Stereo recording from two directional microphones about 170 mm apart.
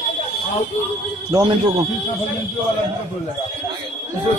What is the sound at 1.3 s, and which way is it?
Speech, 20° right (ahead or behind).